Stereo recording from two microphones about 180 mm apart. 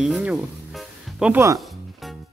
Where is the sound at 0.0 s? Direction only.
5° right (ahead or behind).